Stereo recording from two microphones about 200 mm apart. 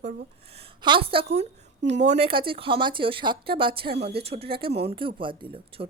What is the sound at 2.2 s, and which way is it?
Speech, 25° right (ahead or behind).